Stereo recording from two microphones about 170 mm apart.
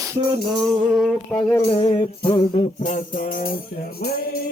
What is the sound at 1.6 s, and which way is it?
Music, 30° left (ahead or behind).